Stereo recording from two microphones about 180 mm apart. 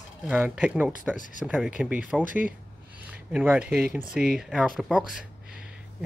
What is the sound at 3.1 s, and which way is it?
Speech, 5° right (ahead or behind).